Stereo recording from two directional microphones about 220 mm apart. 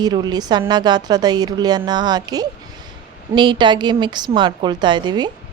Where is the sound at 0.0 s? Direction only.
20° right (ahead or behind).